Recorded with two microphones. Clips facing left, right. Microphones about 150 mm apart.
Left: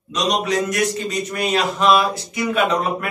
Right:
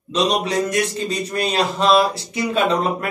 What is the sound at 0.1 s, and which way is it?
A man's voice, 30° right (ahead or behind).